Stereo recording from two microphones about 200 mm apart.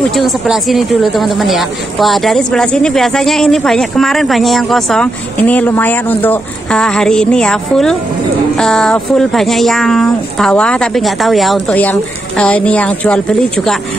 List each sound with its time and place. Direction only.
0.1 s speech: centre (ahead or behind)